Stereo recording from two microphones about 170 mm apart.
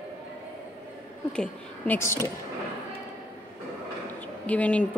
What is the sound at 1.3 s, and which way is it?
Speech, 10° left (ahead or behind).